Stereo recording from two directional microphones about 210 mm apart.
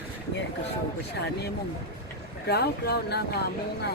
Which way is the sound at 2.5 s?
50° left (ahead or behind).